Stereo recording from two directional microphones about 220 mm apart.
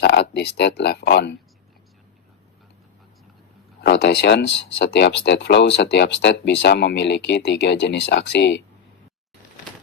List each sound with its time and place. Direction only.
0.0 s speech: 50° left (ahead or behind)
3.8 s speech: 50° left (ahead or behind)